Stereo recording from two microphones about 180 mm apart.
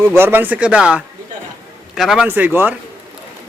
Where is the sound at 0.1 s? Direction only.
10° right (ahead or behind).